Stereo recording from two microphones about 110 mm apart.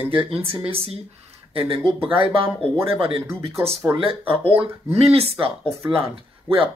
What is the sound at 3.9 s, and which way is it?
Speech, 55° right (ahead or behind).